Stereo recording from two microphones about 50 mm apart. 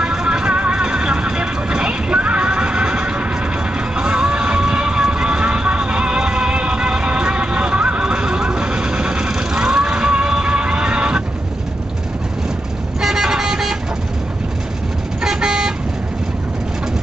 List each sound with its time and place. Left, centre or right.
0.0 s music: centre
3.9 s vehicle: centre
13.0 s vehicle: centre
15.2 s vehicle: centre